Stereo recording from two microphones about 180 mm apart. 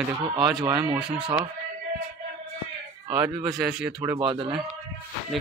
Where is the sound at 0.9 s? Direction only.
5° right (ahead or behind).